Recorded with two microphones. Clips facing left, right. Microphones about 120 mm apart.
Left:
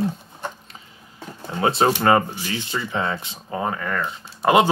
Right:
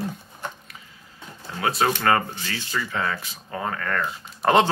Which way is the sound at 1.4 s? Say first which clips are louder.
Left 4 dB; 25° left (ahead or behind).